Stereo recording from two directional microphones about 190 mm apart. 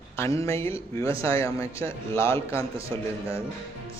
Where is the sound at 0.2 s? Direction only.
15° left (ahead or behind).